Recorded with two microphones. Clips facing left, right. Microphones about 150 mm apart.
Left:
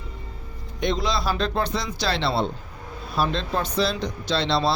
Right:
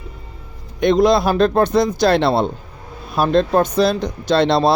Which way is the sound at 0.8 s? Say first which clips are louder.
Right 11 dB; 55° right (ahead or behind).